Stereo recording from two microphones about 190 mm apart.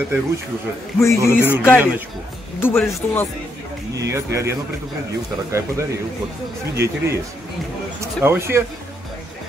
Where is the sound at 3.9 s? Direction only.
15° right (ahead or behind).